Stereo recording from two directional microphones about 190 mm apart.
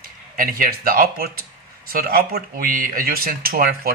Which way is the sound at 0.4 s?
50° right (ahead or behind).